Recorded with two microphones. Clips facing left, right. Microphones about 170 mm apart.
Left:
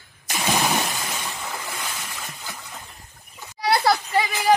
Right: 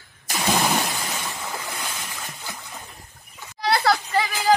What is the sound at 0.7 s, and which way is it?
Splash, centre (ahead or behind).